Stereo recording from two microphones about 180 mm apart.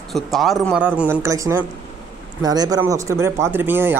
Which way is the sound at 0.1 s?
Centre (ahead or behind).